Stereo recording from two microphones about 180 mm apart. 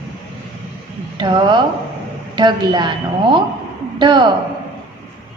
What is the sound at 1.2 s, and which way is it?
A woman's voice, 25° right (ahead or behind).